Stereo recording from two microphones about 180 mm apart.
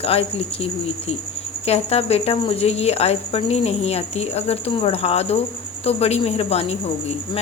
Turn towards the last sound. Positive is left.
turn(degrees=35)  # may be behind; listen again after turning